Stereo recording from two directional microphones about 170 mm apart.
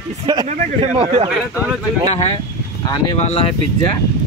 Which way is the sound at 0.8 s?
40° right (ahead or behind).